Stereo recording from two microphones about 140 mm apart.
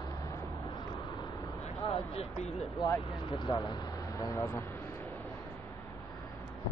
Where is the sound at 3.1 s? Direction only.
35° left (ahead or behind); by 5.3 s 15° left (ahead or behind).